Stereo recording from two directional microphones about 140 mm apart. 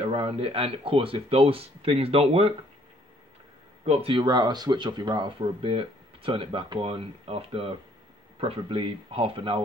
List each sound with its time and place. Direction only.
0.0 s speech: 45° right (ahead or behind)
3.8 s speech: 45° right (ahead or behind)